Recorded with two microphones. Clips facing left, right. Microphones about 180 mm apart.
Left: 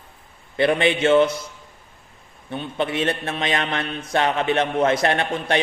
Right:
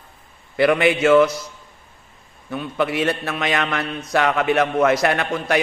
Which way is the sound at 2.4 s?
25° left (ahead or behind).